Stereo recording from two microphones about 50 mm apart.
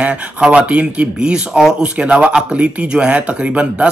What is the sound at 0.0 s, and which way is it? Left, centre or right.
Speech, right.